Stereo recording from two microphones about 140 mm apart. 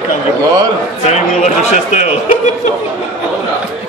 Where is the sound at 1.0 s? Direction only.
55° left (ahead or behind).